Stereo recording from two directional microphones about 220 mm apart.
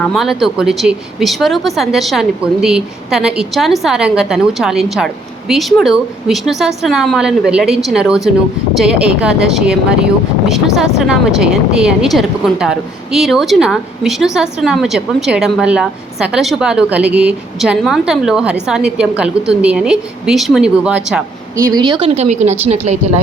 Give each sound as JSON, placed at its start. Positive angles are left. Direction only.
{"t": 0.0, "sound": "a woman's voice", "side_deg": 0}